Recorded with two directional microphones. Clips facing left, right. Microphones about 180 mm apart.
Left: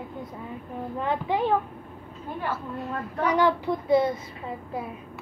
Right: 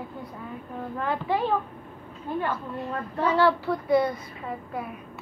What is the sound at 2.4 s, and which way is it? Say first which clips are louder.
A woman's voice: left 3 dB; 5° left (ahead or behind).